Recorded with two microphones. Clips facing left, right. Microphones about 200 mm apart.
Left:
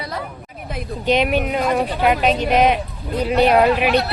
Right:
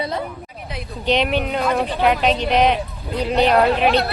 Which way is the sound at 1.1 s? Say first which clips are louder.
Left 1 dB; 10° left (ahead or behind).